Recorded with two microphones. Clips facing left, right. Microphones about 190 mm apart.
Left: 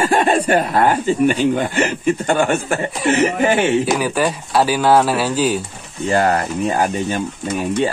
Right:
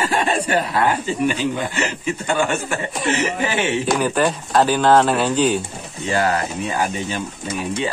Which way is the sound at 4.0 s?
5° left (ahead or behind).